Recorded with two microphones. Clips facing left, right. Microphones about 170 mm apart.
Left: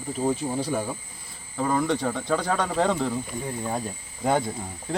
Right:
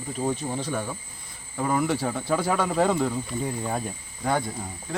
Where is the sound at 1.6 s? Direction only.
5° right (ahead or behind).